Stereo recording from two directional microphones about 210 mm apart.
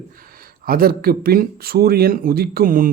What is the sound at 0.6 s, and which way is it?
Speech, 45° right (ahead or behind).